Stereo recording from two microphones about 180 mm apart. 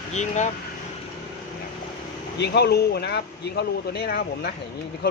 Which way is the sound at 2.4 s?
70° left (ahead or behind).